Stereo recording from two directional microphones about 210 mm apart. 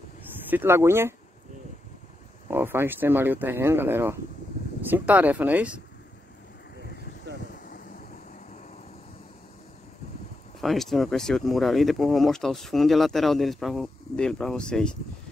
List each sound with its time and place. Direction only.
0.5 s speech: 10° right (ahead or behind)
2.4 s speech: 10° right (ahead or behind)
7.3 s vehicle: 55° right (ahead or behind)
10.6 s speech: centre (ahead or behind)